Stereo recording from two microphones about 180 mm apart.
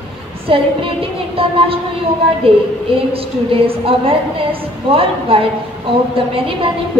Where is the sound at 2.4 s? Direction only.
30° right (ahead or behind).